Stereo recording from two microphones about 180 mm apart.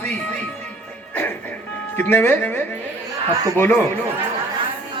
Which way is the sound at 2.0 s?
10° left (ahead or behind).